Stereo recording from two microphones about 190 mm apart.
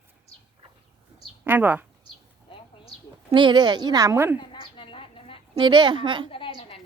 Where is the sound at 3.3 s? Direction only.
25° right (ahead or behind).